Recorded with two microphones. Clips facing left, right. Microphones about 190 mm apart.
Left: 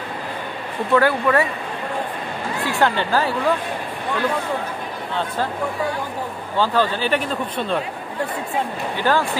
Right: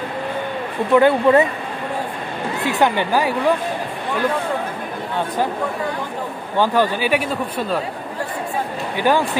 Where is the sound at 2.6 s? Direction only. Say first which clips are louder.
Right 2 dB; 20° right (ahead or behind).